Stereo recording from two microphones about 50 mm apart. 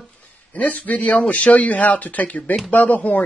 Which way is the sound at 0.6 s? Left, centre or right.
Left.